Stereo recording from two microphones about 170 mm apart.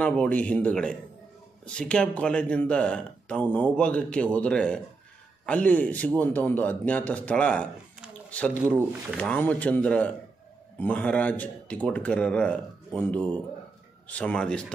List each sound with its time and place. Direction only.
0.0 s a man's voice: 10° left (ahead or behind)